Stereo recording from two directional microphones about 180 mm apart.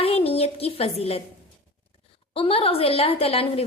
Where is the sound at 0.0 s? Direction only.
35° left (ahead or behind).